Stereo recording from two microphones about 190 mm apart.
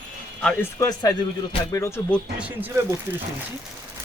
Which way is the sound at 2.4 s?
10° right (ahead or behind).